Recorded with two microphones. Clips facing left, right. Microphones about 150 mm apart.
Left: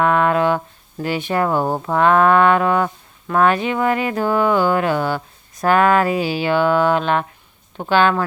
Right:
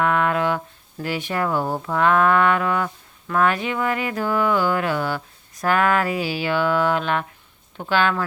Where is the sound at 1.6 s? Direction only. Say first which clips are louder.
Left 4 dB; 45° left (ahead or behind).